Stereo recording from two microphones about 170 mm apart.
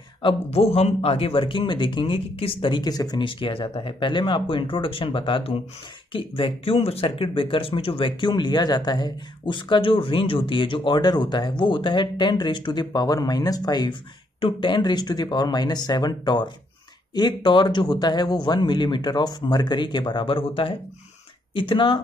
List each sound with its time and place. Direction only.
0.2 s speech: 35° left (ahead or behind)